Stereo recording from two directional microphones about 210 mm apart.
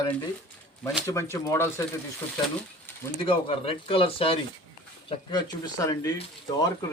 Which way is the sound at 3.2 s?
25° left (ahead or behind).